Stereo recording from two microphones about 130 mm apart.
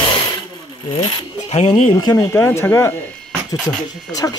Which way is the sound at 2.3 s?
20° left (ahead or behind).